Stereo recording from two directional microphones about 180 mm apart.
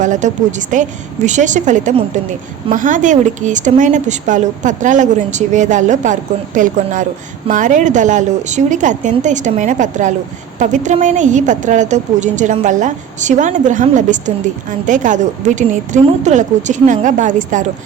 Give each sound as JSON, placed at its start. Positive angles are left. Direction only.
{"t": 0.0, "sound": "a woman's voice", "side_deg": -45}